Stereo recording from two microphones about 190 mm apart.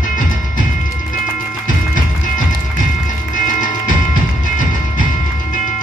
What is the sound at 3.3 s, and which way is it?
Music, 45° left (ahead or behind).